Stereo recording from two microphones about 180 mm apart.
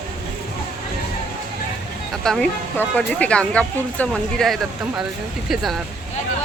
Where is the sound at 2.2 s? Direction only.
5° left (ahead or behind).